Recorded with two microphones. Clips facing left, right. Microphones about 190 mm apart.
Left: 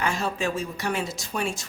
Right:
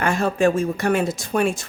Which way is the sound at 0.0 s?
55° right (ahead or behind).